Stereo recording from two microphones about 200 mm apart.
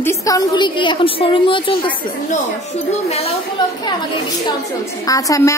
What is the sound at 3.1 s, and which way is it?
Speech, 30° left (ahead or behind).